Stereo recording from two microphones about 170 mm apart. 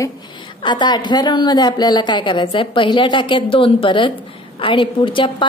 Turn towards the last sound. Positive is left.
turn(degrees=30)  # may be behind; listen again after turning